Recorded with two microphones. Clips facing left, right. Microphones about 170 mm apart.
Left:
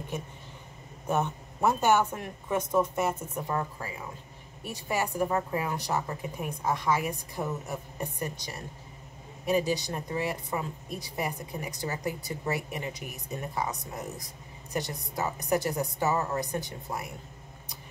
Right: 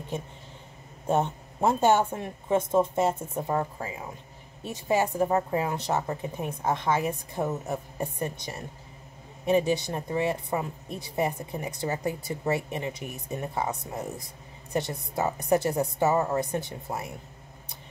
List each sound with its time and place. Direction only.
1.0 s speech: 25° right (ahead or behind)